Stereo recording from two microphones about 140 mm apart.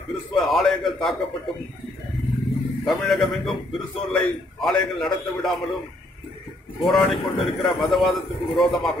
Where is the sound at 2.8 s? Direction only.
Centre (ahead or behind).